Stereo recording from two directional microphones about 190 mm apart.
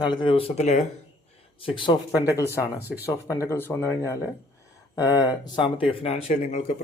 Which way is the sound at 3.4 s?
10° left (ahead or behind).